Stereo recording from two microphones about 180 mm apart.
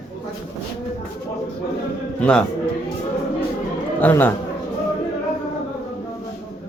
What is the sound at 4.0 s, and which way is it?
Speech, 10° left (ahead or behind).